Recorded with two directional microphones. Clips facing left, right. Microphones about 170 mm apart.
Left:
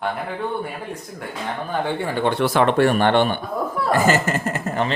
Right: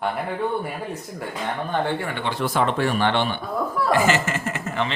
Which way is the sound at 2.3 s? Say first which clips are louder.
Left 4 dB; 75° left (ahead or behind).